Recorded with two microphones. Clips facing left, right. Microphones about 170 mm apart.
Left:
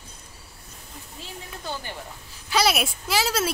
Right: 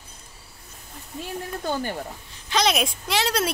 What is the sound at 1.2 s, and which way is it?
Speech, 50° right (ahead or behind).